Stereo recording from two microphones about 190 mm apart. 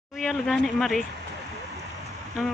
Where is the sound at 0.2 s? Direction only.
Centre (ahead or behind).